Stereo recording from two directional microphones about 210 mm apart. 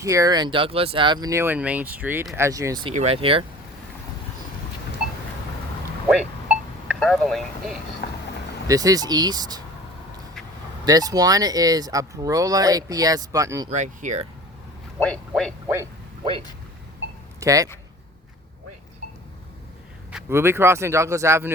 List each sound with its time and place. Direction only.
0.0 s speech: 15° right (ahead or behind)
2.9 s speech: 30° right (ahead or behind)
6.1 s a sound: 5° right (ahead or behind)
8.6 s speech: 15° right (ahead or behind)
10.8 s speech: 15° right (ahead or behind)
13.7 s speech: 35° right (ahead or behind)
14.9 s a man's voice: 5° left (ahead or behind)
15.6 s a sound: 15° right (ahead or behind)
17.4 s speech: 15° right (ahead or behind)
20.1 s speech: 10° right (ahead or behind)